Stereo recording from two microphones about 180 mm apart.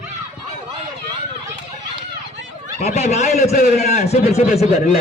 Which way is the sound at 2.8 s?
40° left (ahead or behind).